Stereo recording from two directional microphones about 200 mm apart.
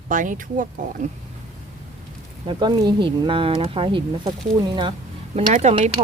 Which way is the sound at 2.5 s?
20° right (ahead or behind).